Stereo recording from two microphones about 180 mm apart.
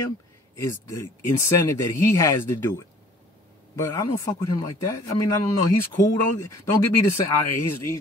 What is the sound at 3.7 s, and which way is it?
Speech, 15° left (ahead or behind).